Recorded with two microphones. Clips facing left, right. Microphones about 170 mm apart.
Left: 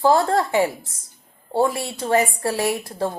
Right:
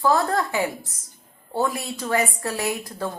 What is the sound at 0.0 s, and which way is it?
A woman's voice, 30° left (ahead or behind).